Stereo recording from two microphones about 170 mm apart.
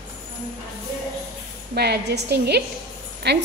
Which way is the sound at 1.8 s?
75° right (ahead or behind).